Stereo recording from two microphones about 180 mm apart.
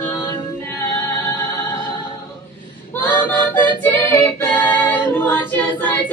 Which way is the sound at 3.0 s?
10° left (ahead or behind).